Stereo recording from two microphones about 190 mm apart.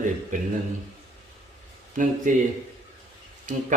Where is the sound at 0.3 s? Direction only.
40° right (ahead or behind).